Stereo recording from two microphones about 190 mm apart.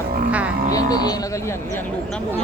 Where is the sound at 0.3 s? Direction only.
5° right (ahead or behind).